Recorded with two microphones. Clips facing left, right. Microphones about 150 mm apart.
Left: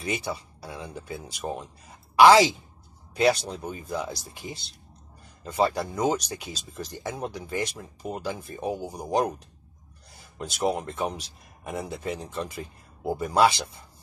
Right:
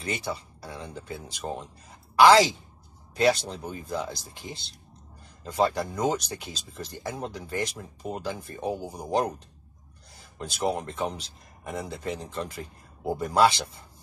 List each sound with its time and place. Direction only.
0.0 s a woman's voice: 5° left (ahead or behind)
10.6 s speech: 5° left (ahead or behind)